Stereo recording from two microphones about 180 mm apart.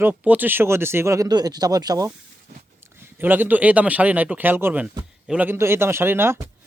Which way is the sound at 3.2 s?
10° right (ahead or behind).